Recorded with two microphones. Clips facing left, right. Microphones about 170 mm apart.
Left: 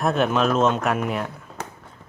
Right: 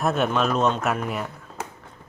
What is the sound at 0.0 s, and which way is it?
Speech, centre (ahead or behind).